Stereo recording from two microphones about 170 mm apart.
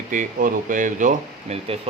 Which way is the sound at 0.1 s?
55° right (ahead or behind).